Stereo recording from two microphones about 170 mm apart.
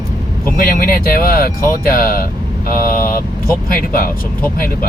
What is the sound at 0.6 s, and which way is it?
Speech, 60° left (ahead or behind).